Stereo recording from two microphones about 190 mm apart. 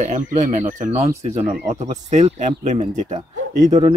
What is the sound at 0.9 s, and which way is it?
Speech, 15° right (ahead or behind).